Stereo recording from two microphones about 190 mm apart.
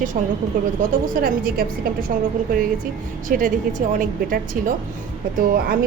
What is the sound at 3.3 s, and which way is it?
A woman's voice, 45° right (ahead or behind).